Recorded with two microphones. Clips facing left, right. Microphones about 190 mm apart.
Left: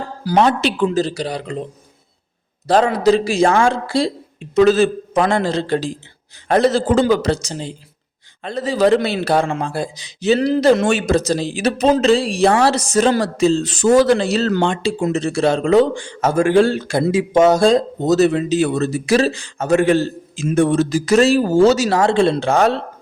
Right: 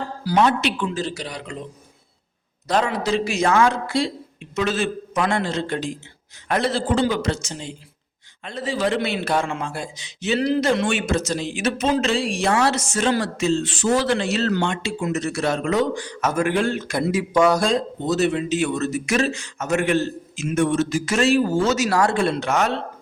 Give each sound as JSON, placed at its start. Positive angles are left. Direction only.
{"t": 0.3, "sound": "a man's voice", "side_deg": 35}
{"t": 2.6, "sound": "a man's voice", "side_deg": 35}
{"t": 17.7, "sound": "a man's voice", "side_deg": 40}